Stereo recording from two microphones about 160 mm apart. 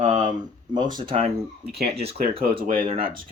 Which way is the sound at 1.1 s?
40° right (ahead or behind).